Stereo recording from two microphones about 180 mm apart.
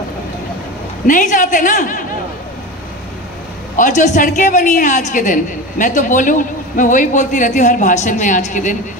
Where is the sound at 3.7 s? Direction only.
45° left (ahead or behind).